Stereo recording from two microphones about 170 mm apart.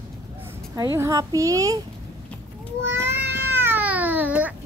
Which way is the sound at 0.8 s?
20° right (ahead or behind).